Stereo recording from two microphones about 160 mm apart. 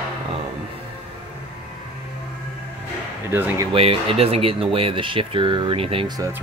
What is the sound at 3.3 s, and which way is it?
Speech, 15° right (ahead or behind).